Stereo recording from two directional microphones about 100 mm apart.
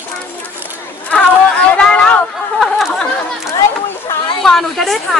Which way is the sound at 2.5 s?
Centre (ahead or behind).